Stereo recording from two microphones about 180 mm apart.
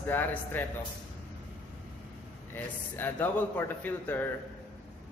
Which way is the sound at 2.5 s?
10° left (ahead or behind).